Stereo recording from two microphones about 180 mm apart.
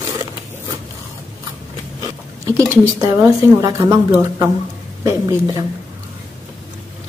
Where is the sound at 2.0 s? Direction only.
15° right (ahead or behind).